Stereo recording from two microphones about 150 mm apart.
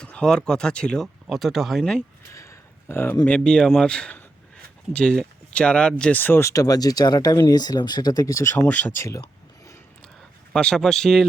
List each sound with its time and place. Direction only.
0.0 s speech: 5° left (ahead or behind)
2.3 s a sound: 20° left (ahead or behind)
3.2 s speech: 5° left (ahead or behind)
10.5 s speech: 5° left (ahead or behind)